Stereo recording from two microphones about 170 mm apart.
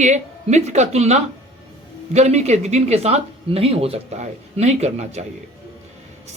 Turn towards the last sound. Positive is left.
turn(degrees=-40)  # may be behind; listen again after turning